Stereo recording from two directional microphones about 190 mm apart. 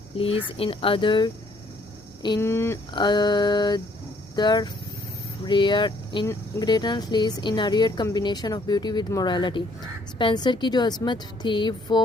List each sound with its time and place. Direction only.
0.2 s speech: 30° left (ahead or behind)